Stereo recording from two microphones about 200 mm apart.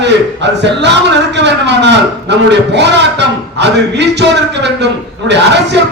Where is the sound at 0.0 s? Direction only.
60° right (ahead or behind).